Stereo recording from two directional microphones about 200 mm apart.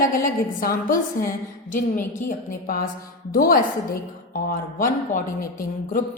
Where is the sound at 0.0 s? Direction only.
45° left (ahead or behind).